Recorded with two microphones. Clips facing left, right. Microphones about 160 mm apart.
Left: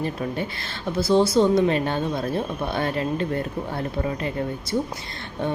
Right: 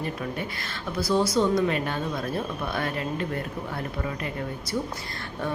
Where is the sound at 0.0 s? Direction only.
30° left (ahead or behind).